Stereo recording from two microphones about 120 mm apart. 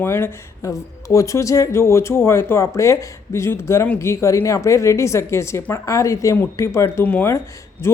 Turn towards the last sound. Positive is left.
turn(degrees=20)  # may be behind; listen again after turning